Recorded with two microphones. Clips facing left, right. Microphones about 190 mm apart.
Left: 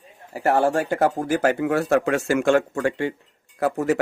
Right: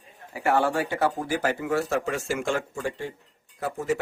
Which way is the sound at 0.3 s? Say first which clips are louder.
Left 4 dB; 40° left (ahead or behind).